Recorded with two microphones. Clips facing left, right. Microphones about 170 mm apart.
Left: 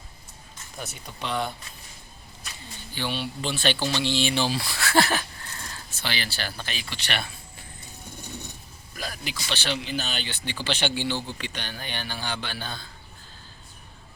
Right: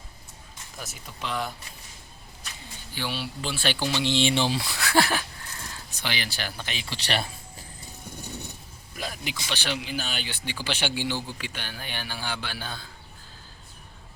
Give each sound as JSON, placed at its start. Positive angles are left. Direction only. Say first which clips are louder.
{"t": 0.8, "sound": "speech", "louder": "left 2 dB", "side_deg": 0}
{"t": 2.9, "sound": "speech", "louder": "left 2 dB", "side_deg": -5}
{"t": 9.0, "sound": "speech", "louder": "right 1 dB", "side_deg": -20}